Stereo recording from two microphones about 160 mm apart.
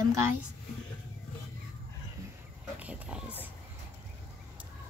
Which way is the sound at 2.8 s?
5° right (ahead or behind).